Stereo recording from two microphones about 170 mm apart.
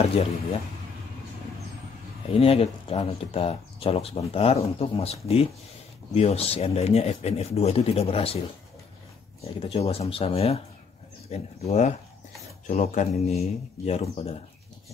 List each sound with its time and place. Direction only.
2.3 s speech: 35° left (ahead or behind)
9.4 s speech: 40° left (ahead or behind)